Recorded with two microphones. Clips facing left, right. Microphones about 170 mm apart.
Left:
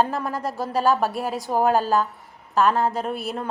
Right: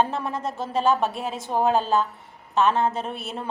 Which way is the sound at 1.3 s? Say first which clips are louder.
Left 3 dB; 20° right (ahead or behind).